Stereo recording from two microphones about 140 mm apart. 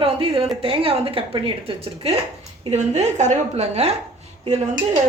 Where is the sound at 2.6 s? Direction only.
55° right (ahead or behind).